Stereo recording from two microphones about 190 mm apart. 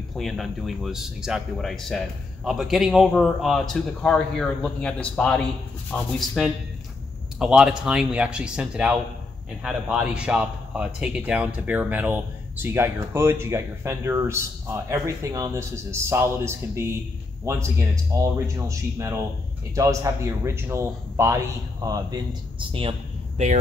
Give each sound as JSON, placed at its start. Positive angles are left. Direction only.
{"t": 0.1, "sound": "speech", "side_deg": 0}